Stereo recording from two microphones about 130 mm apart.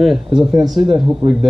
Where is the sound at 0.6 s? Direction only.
35° right (ahead or behind).